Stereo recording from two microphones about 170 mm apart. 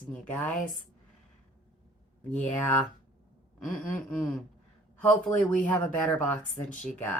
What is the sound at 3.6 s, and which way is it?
Speech, 5° left (ahead or behind).